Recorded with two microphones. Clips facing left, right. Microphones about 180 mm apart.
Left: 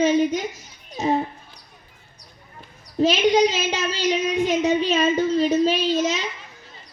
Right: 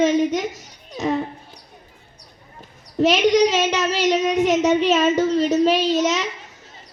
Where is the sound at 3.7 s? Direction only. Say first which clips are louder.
Right 4 dB; 80° right.